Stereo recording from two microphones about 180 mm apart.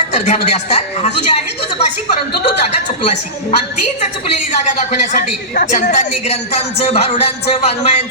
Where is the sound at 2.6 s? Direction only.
35° left (ahead or behind).